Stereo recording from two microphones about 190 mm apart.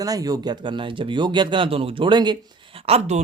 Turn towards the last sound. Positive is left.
turn(degrees=-30)  # may be behind; listen again after turning